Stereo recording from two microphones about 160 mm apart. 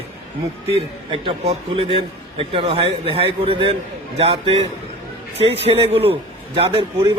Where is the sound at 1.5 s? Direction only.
35° right (ahead or behind).